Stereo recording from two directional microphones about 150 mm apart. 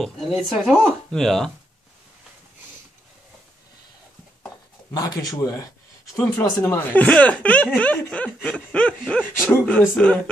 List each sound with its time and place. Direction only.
0.3 s speech: 5° right (ahead or behind)
4.9 s speech: 25° left (ahead or behind); by 10.1 s 10° left (ahead or behind)